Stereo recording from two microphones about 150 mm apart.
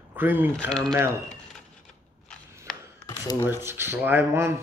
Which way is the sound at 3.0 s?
25° left (ahead or behind).